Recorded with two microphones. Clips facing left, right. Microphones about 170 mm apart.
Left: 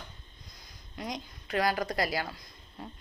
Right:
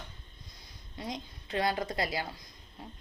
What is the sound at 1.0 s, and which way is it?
A woman's voice, 25° right (ahead or behind).